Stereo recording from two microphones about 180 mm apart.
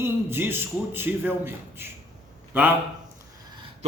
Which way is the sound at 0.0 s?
10° right (ahead or behind).